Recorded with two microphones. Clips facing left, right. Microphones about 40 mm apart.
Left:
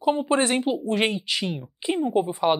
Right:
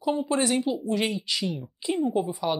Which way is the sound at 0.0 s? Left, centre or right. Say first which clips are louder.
Left 4 dB; left.